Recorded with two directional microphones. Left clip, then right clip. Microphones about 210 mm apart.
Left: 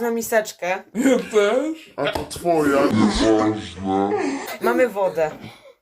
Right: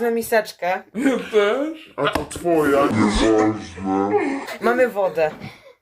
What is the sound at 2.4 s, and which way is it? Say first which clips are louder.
Speech: right 1 dB; 5° left (ahead or behind).